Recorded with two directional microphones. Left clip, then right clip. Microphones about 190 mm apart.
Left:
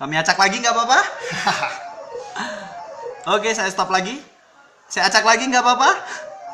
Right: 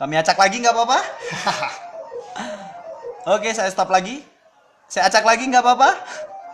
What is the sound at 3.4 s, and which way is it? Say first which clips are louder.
Speech: even; 50° right (ahead or behind).